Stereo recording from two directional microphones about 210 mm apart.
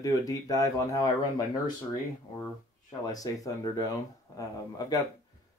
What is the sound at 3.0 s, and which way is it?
Speech, 15° left (ahead or behind).